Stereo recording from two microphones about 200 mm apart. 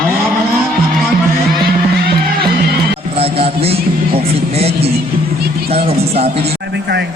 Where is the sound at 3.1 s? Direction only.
30° right (ahead or behind).